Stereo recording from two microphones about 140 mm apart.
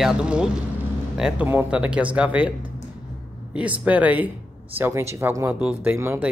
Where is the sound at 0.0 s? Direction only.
5° right (ahead or behind).